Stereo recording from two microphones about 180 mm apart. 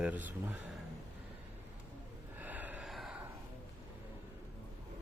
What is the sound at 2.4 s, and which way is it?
Gasp, 10° right (ahead or behind).